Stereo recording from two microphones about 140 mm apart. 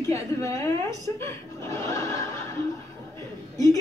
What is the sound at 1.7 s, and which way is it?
Neigh, 20° left (ahead or behind).